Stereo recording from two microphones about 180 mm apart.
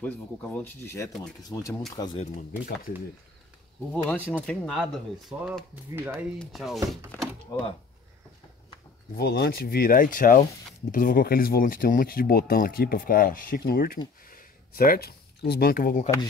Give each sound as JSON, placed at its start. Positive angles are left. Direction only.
{"t": 0.0, "sound": "speech", "side_deg": 10}
{"t": 1.7, "sound": "speech", "side_deg": 0}
{"t": 3.9, "sound": "speech", "side_deg": 10}
{"t": 5.4, "sound": "speech", "side_deg": -5}
{"t": 9.1, "sound": "speech", "side_deg": 60}